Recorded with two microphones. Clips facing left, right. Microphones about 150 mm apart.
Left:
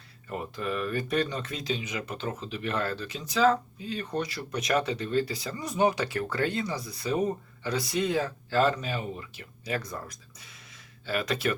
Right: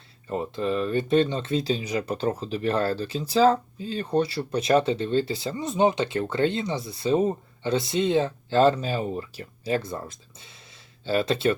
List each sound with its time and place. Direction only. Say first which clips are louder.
0.3 s speech: right 6 dB; 25° right (ahead or behind)